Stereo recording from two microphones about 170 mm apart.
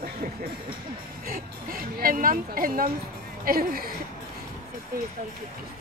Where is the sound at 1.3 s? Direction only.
60° right (ahead or behind).